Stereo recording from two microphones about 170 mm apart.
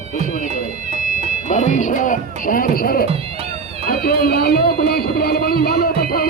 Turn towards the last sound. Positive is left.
turn(degrees=60)  # may be behind; listen again after turning